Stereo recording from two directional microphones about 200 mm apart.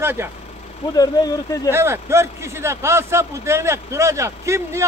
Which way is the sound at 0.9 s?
20° left (ahead or behind).